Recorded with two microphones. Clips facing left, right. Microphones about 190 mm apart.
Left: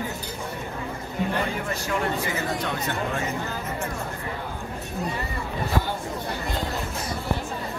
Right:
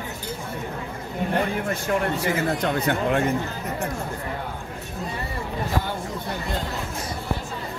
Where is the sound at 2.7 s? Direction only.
60° right (ahead or behind).